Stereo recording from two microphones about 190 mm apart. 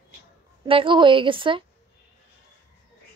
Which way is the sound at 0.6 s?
25° right (ahead or behind).